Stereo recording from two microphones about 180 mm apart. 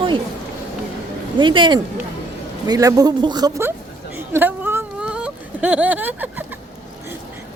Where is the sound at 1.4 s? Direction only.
25° right (ahead or behind).